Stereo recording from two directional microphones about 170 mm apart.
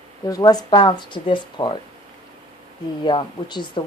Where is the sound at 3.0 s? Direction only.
25° left (ahead or behind).